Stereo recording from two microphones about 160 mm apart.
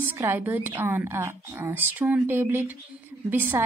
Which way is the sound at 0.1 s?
10° right (ahead or behind).